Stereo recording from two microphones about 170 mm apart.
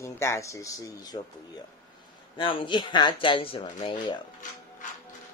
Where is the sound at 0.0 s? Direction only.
15° left (ahead or behind).